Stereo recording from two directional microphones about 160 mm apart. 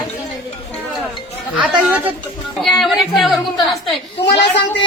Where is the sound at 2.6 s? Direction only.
Centre (ahead or behind).